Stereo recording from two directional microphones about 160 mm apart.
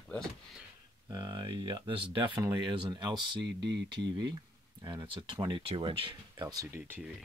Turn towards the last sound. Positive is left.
turn(degrees=-15)  # may be behind; listen again after turning